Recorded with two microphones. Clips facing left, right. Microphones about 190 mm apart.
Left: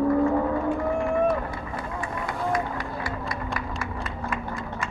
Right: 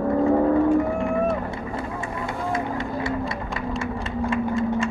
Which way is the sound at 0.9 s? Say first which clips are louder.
Even; 25° right (ahead or behind).